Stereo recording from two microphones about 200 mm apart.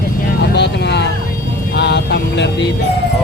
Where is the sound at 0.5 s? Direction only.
60° left (ahead or behind).